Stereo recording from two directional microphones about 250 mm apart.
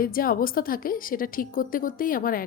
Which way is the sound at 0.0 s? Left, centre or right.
Left.